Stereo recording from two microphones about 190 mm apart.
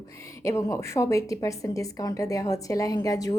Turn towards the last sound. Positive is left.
turn(degrees=20)  # may be behind; listen again after turning